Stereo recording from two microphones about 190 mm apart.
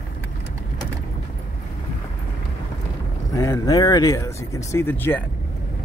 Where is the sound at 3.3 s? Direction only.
15° left (ahead or behind).